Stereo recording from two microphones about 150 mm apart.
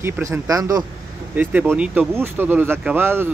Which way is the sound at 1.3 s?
10° right (ahead or behind).